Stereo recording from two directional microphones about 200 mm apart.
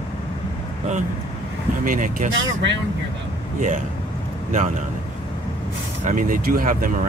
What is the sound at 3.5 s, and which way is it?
Speech, 40° right (ahead or behind).